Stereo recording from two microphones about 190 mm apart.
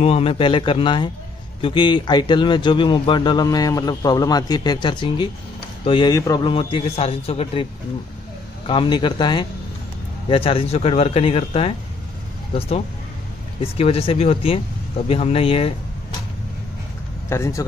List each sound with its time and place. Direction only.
0.0 s a man's voice: 30° left (ahead or behind)
8.6 s a man's voice: 25° left (ahead or behind)
17.3 s speech: 15° left (ahead or behind)